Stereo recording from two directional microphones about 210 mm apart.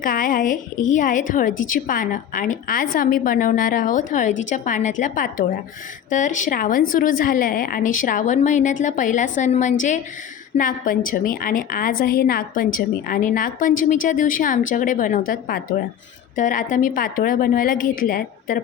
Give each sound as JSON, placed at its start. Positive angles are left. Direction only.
{"t": 0.0, "sound": "a woman's voice", "side_deg": 40}